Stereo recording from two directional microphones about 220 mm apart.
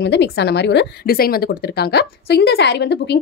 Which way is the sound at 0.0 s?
50° left (ahead or behind).